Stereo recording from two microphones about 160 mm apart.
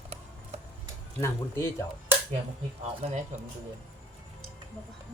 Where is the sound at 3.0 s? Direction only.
40° right (ahead or behind).